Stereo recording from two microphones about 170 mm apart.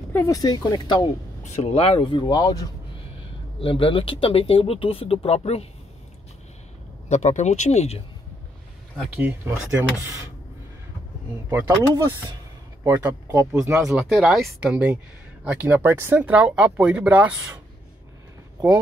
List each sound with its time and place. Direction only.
0.1 s speech: 20° left (ahead or behind)
1.4 s speech: 40° left (ahead or behind)
7.1 s speech: 45° left (ahead or behind)
11.5 s speech: 20° right (ahead or behind)
13.8 s speech: centre (ahead or behind)